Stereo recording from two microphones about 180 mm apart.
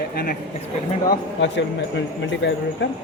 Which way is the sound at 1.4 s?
80° left.